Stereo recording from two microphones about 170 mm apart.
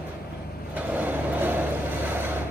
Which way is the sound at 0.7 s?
10° right (ahead or behind).